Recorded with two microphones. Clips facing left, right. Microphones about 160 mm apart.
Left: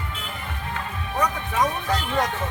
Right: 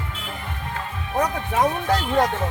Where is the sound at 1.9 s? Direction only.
30° right (ahead or behind).